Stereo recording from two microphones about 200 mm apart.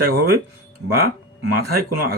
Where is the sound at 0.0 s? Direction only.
50° right (ahead or behind).